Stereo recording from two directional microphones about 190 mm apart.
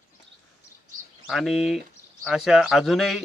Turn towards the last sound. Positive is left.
turn(degrees=0)  # may be behind; listen again after turning